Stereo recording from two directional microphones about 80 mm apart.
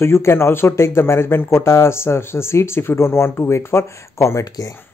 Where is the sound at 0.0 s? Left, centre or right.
Left.